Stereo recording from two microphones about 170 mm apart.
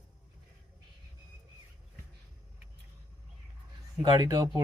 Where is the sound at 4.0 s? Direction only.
25° right (ahead or behind).